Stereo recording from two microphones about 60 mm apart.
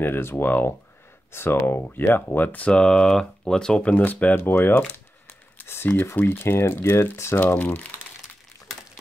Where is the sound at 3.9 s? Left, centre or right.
Left.